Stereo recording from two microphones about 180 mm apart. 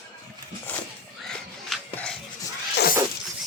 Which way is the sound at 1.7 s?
5° left (ahead or behind).